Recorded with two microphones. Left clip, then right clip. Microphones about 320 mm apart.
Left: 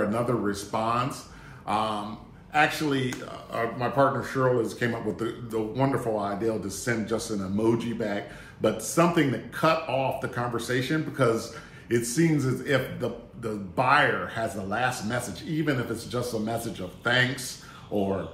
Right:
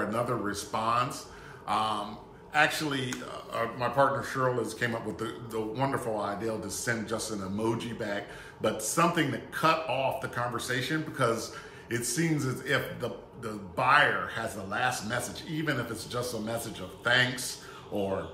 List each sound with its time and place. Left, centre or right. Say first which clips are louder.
0.1 s a man's voice: left 3 dB; centre